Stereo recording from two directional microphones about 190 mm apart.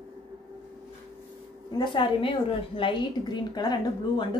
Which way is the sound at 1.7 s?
25° left (ahead or behind).